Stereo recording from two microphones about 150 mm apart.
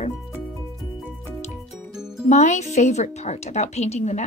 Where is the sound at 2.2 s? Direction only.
50° left (ahead or behind).